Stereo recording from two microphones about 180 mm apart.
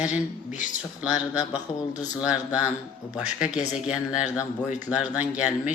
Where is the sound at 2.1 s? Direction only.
5° right (ahead or behind).